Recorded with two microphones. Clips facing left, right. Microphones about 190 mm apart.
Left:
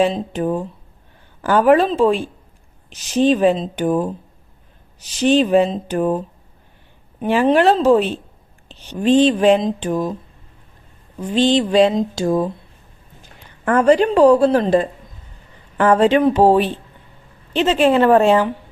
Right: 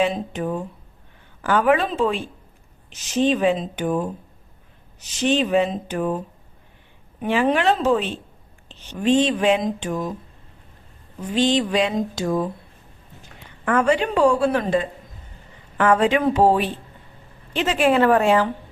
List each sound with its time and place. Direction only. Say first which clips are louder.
0.0 s speech: left 4 dB; 35° left (ahead or behind)
7.2 s speech: left 5 dB; 35° left (ahead or behind)
11.3 s speech: left 5 dB; 30° left (ahead or behind)
13.7 s speech: left 6 dB; 40° left (ahead or behind)